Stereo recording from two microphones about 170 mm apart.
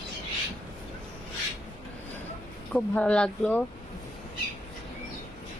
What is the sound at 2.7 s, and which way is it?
Speech, 5° left (ahead or behind).